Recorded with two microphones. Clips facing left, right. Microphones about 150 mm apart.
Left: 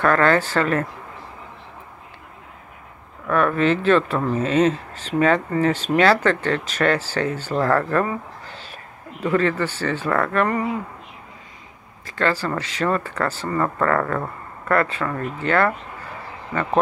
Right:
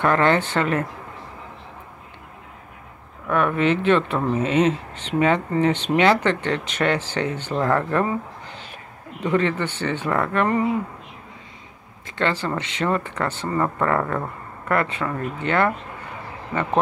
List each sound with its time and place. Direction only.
0.0 s speech: 20° right (ahead or behind)
3.3 s speech: 20° right (ahead or behind)
12.2 s speech: 25° right (ahead or behind)